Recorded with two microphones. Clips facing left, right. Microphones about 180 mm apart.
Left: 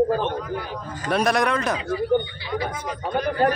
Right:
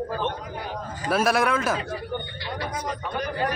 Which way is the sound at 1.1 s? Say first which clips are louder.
Left 1 dB; 5° right (ahead or behind).